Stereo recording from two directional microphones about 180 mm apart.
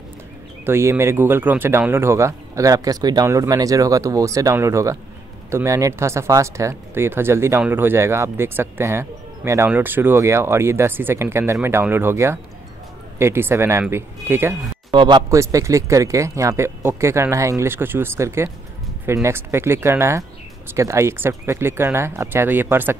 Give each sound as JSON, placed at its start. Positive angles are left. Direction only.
{"t": 0.7, "sound": "speech", "side_deg": -15}
{"t": 14.9, "sound": "speech", "side_deg": -25}